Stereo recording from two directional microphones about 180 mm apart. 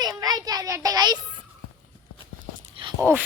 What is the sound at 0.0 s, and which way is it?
Child singing, 20° right (ahead or behind).